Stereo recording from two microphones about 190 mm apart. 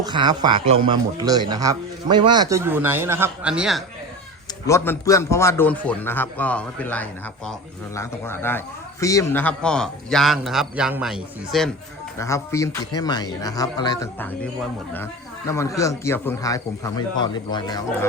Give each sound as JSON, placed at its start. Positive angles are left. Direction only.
{"t": 0.0, "sound": "a man's voice", "side_deg": -25}
{"t": 4.6, "sound": "a man's voice", "side_deg": 15}
{"t": 12.2, "sound": "a man's voice", "side_deg": 15}
{"t": 15.4, "sound": "a man's voice", "side_deg": 15}